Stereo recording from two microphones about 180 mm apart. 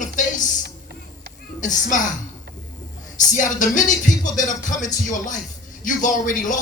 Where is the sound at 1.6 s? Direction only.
45° left (ahead or behind).